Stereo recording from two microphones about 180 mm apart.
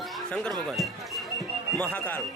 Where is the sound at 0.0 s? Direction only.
5° left (ahead or behind).